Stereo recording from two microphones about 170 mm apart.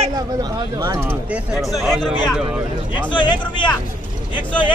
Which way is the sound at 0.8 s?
15° right (ahead or behind).